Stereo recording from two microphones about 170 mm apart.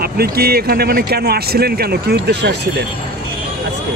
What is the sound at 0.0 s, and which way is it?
Speech, 65° right (ahead or behind).